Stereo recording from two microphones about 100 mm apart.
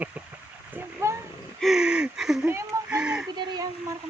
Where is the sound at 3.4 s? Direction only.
45° right (ahead or behind).